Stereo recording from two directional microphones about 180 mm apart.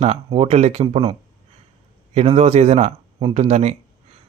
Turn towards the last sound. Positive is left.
turn(degrees=-40)  # may be behind; listen again after turning